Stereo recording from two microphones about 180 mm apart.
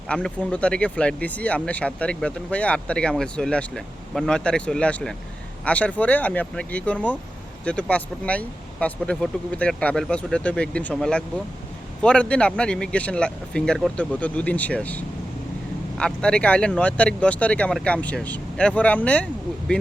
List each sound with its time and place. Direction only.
0.1 s speech: 5° left (ahead or behind)